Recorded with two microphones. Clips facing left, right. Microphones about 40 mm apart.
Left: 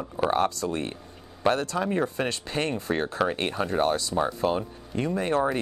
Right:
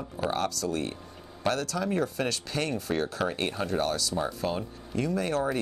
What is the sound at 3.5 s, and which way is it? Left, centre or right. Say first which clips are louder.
Speech: left 4 dB; left.